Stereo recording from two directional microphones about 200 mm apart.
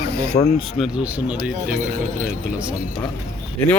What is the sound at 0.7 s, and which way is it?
Speech, 5° right (ahead or behind).